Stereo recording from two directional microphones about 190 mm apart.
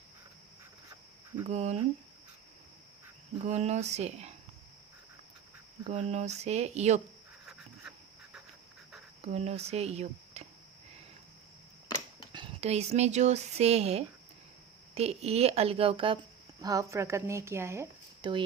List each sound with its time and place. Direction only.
1.5 s speech: 35° right (ahead or behind)
3.4 s speech: 35° right (ahead or behind)
5.8 s speech: 35° right (ahead or behind)
7.4 s cricket: 5° right (ahead or behind)
9.2 s speech: 35° right (ahead or behind)
12.3 s speech: 25° right (ahead or behind)
16.6 s a woman's voice: 20° right (ahead or behind)